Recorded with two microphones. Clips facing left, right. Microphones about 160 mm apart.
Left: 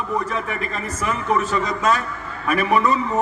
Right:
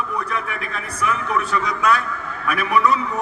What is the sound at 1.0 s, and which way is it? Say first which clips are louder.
A man's voice: left 1 dB; 35° left (ahead or behind).